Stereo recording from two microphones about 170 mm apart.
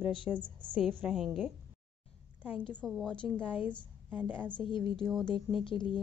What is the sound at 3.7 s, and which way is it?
Speech, 10° right (ahead or behind).